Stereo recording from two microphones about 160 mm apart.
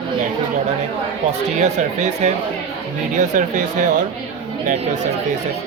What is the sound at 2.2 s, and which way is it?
Speech, 45° right (ahead or behind).